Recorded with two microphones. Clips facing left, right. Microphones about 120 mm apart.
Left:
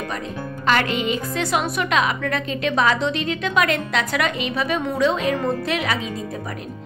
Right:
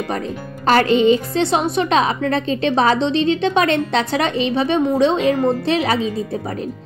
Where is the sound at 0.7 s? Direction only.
35° right (ahead or behind).